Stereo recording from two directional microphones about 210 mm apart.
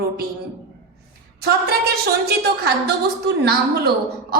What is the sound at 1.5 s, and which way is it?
A woman's voice, 45° right (ahead or behind).